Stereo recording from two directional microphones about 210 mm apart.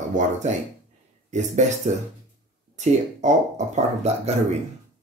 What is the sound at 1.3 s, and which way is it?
Speech, 35° right (ahead or behind).